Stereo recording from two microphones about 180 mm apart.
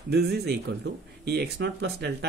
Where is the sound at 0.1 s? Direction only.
65° right (ahead or behind).